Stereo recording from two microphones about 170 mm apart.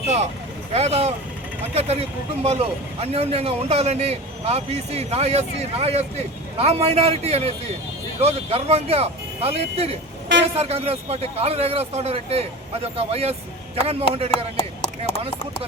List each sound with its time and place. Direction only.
0.7 s a man's voice: 40° right (ahead or behind)